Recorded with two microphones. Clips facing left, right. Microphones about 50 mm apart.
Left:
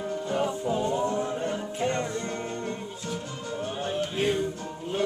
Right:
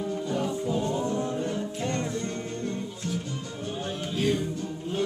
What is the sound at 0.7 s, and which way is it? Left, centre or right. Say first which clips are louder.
Music: left 2 dB; centre.